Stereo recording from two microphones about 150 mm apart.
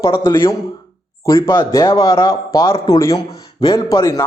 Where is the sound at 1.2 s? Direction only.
15° left (ahead or behind).